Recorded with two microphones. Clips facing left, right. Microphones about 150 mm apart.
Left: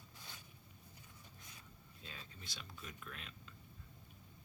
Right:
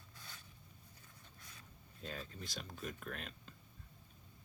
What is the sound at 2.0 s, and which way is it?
Speech, 50° right (ahead or behind).